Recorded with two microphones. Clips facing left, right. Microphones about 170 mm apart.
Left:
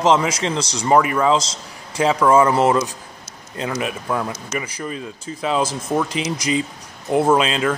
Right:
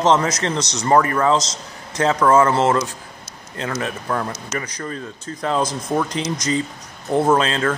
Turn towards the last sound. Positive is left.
turn(degrees=10)  # may be behind; listen again after turning